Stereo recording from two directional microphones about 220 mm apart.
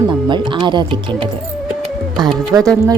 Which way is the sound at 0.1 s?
20° right (ahead or behind).